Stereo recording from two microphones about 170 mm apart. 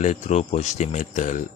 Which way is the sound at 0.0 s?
40° left (ahead or behind).